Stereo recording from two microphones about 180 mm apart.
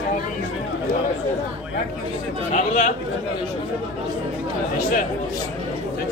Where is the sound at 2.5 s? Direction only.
40° left (ahead or behind).